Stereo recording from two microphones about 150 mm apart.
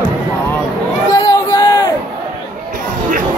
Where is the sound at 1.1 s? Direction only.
20° left (ahead or behind).